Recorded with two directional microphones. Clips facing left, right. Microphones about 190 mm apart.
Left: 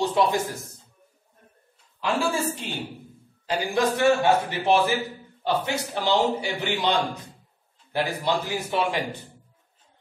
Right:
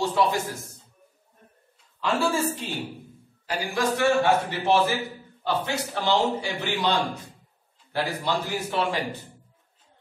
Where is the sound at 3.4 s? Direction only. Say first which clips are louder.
Left 3 dB; 20° left (ahead or behind).